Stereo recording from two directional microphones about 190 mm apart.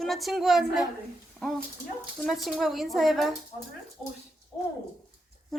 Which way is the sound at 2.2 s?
Centre (ahead or behind).